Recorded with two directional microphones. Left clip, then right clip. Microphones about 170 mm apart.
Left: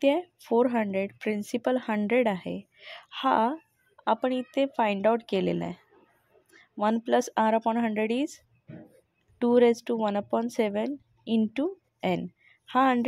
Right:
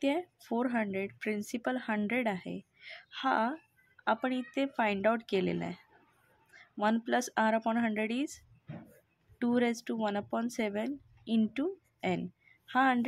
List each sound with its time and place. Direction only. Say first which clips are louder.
0.0 s speech: left 8 dB; 30° left (ahead or behind)
9.4 s speech: left 10 dB; 25° left (ahead or behind)